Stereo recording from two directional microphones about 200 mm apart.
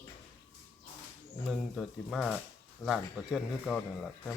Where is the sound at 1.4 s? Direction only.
Centre (ahead or behind).